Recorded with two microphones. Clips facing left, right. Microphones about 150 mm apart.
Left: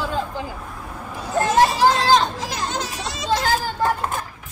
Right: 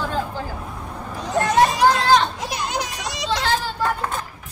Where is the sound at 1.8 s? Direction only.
30° left (ahead or behind).